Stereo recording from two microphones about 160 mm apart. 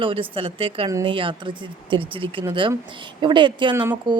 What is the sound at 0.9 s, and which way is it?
Speech, 20° right (ahead or behind).